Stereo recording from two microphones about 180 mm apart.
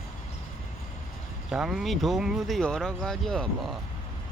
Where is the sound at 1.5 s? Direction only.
5° right (ahead or behind).